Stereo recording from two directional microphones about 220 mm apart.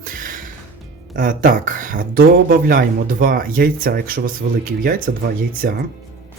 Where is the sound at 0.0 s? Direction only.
40° right (ahead or behind).